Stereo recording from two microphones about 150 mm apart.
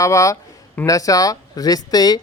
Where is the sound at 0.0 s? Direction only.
20° left (ahead or behind).